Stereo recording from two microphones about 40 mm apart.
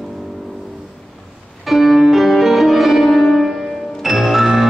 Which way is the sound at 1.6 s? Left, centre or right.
Centre.